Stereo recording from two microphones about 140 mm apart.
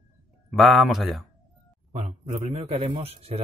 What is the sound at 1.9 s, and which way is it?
A man's voice, 60° right (ahead or behind).